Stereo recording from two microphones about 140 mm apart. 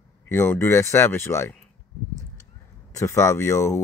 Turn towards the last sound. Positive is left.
turn(degrees=20)  # may be behind; listen again after turning